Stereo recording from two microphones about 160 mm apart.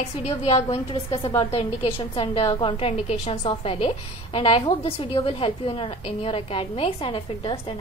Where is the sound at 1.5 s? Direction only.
35° left (ahead or behind).